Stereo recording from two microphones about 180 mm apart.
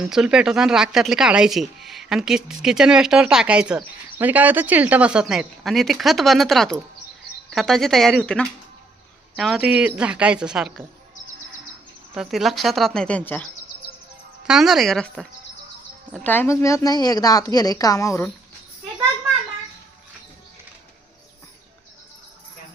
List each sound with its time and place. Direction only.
0.0 s speech: 5° right (ahead or behind)
12.1 s speech: centre (ahead or behind)
14.4 s a woman's voice: 5° right (ahead or behind); by 18.3 s 15° left (ahead or behind)